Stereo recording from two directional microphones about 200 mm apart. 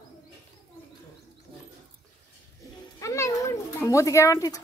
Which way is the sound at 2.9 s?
15° left (ahead or behind).